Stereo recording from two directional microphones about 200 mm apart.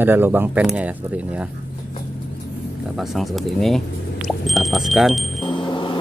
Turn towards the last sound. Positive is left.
turn(degrees=25)  # may be behind; listen again after turning